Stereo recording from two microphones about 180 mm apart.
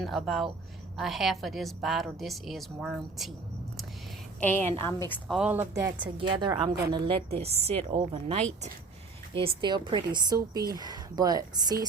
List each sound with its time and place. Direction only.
0.0 s a woman's voice: centre (ahead or behind)
4.4 s a woman's voice: 10° left (ahead or behind)
5.0 s a woman's voice: centre (ahead or behind)
5.7 s a woman's voice: 20° right (ahead or behind)